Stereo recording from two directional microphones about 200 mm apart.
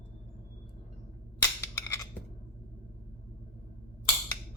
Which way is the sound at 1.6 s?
15° left (ahead or behind).